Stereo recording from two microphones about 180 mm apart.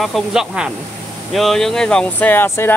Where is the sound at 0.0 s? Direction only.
Centre (ahead or behind).